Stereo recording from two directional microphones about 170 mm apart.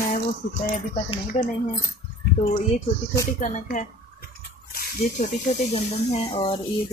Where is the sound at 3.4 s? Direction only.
50° left (ahead or behind).